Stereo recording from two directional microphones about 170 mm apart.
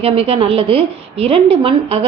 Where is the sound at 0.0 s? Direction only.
35° right (ahead or behind).